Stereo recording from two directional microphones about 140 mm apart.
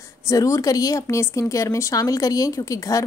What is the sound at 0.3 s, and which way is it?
A woman's voice, 25° left (ahead or behind).